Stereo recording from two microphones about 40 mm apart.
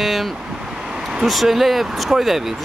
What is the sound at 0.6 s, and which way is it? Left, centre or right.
Vehicle, centre.